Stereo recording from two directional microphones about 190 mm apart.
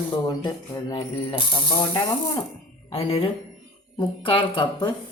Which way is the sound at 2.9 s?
30° left (ahead or behind).